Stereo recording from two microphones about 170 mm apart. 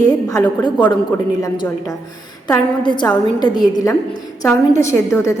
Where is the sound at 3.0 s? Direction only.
25° left (ahead or behind).